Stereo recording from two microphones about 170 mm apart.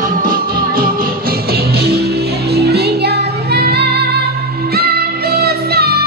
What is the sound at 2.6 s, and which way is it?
Music, 70° right (ahead or behind).